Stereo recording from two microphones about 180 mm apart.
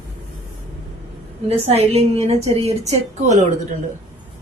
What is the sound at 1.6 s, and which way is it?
A woman's voice, 35° right (ahead or behind).